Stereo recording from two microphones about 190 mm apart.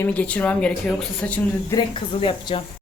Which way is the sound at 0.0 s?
5° left (ahead or behind).